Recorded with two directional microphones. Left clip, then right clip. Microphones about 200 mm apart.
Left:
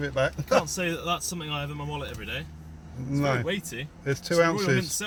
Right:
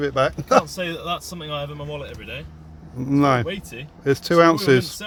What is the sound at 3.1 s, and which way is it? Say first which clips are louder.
Speech: right 8 dB; 55° right (ahead or behind).